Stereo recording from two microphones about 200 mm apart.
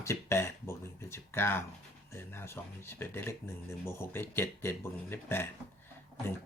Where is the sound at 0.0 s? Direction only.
15° left (ahead or behind).